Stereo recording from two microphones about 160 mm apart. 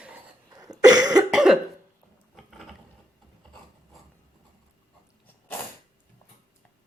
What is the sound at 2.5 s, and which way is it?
Gears, centre (ahead or behind).